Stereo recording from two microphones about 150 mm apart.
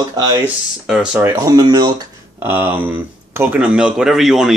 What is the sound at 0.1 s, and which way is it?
Speech, 25° right (ahead or behind).